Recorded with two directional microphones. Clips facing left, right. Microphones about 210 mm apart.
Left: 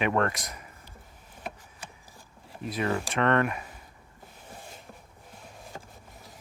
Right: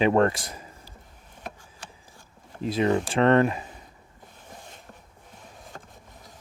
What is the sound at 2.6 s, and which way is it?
Speech, 25° right (ahead or behind).